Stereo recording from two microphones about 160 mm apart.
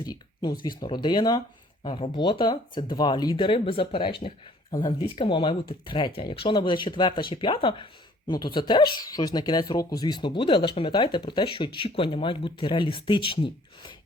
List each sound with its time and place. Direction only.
0.0 s speech: 25° left (ahead or behind)